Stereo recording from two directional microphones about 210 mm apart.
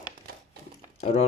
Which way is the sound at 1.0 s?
30° left (ahead or behind).